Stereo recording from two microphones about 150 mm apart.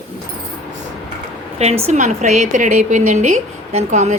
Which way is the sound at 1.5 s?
45° right (ahead or behind).